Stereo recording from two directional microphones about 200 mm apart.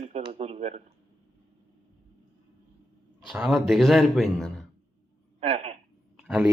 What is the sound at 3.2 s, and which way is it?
Speech, 5° right (ahead or behind).